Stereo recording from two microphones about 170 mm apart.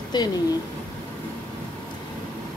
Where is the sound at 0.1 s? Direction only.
25° left (ahead or behind).